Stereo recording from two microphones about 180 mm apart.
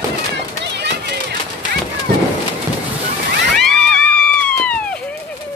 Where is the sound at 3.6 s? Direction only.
5° left (ahead or behind).